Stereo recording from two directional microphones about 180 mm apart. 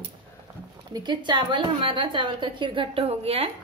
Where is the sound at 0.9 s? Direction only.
25° right (ahead or behind).